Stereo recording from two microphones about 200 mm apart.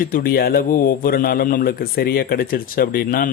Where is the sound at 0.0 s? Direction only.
45° left (ahead or behind).